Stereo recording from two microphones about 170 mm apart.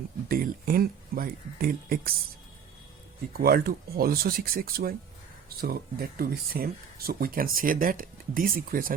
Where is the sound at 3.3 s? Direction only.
60° right (ahead or behind).